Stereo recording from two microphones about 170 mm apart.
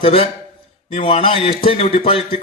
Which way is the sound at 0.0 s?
35° left (ahead or behind).